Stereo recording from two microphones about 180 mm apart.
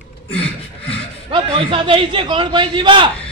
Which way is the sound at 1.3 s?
30° right (ahead or behind).